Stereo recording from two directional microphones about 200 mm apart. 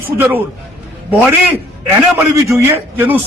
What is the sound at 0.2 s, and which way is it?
A man's voice, 10° right (ahead or behind).